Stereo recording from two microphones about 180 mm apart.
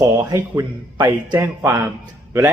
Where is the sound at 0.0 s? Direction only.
15° right (ahead or behind).